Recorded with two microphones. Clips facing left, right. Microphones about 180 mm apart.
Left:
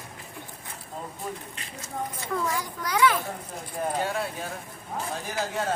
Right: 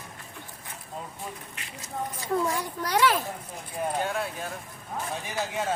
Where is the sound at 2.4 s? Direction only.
30° right (ahead or behind).